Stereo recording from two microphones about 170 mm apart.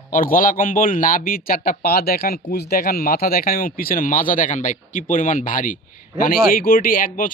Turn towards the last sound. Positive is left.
turn(degrees=55)  # may be behind; listen again after turning